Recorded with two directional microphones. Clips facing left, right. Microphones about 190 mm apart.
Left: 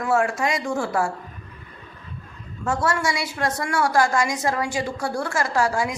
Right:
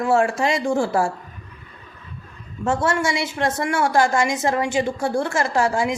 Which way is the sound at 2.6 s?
25° right (ahead or behind).